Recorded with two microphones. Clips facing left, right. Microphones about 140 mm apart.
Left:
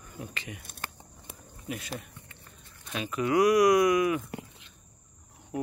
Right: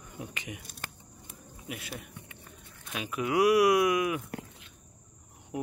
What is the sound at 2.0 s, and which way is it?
Speech, 5° right (ahead or behind).